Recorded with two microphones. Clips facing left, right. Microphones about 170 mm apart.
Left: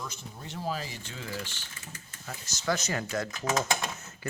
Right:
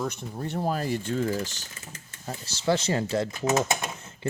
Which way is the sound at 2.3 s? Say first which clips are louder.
Right 6 dB; 30° right (ahead or behind).